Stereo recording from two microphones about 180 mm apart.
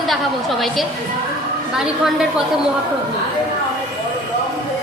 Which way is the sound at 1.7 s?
5° right (ahead or behind).